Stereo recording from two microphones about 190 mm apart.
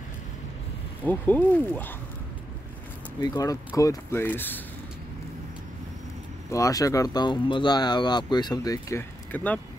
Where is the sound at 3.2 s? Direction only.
20° left (ahead or behind).